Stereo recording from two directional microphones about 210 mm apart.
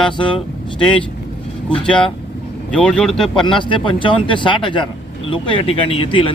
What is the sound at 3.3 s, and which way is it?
Speech, 25° left (ahead or behind).